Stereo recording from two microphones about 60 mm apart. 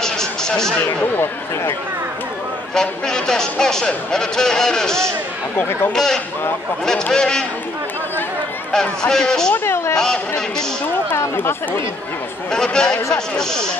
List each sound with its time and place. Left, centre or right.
0.0 s a sound: centre
1.1 s speech: left
2.7 s speech: centre
9.1 s speech: centre
9.5 s a sound: left
9.9 s speech: centre
11.3 s speech: left
12.4 s speech: centre